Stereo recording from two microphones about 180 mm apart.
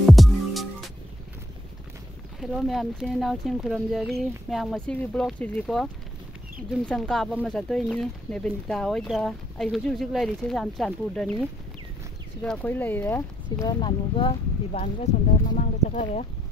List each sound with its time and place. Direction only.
0.0 s music: centre (ahead or behind)
2.4 s speech: centre (ahead or behind)
12.4 s speech: 10° left (ahead or behind)
13.7 s speech: 25° left (ahead or behind); by 16.3 s 40° left (ahead or behind)